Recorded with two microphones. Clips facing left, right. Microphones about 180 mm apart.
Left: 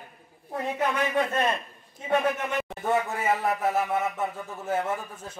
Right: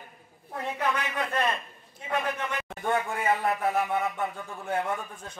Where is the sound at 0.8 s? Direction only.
20° left (ahead or behind).